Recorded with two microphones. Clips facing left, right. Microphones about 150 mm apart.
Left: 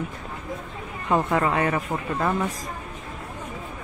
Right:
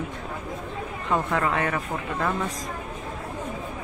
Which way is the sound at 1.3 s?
15° left (ahead or behind).